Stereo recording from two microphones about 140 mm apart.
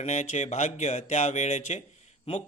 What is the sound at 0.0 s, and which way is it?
Speech, 55° left (ahead or behind).